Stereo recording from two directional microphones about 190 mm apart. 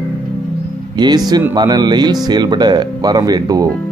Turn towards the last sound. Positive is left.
turn(degrees=-20)  # may be behind; listen again after turning